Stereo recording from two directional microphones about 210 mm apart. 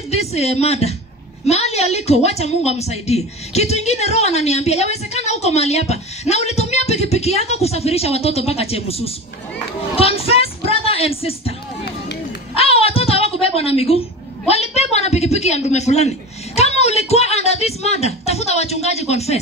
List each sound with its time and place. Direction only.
0.1 s a woman's voice: 30° left (ahead or behind)
9.9 s music: 30° left (ahead or behind)
12.5 s a sound: 30° left (ahead or behind)
14.5 s a man's voice: 30° left (ahead or behind)